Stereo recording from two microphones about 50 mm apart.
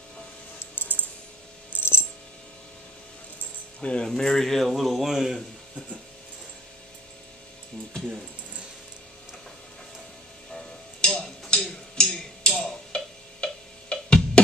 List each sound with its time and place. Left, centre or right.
0.7 s a sound: left
1.7 s coin: left
3.8 s speech: left
4.1 s speech: centre
10.5 s tick-tock: centre